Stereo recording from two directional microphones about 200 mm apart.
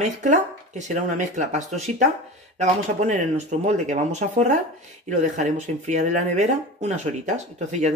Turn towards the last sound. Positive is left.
turn(degrees=-35)  # may be behind; listen again after turning